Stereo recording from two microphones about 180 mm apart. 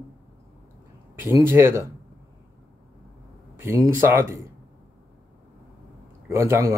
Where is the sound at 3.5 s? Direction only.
15° right (ahead or behind).